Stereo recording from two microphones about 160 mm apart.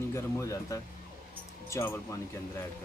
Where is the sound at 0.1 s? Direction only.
20° left (ahead or behind).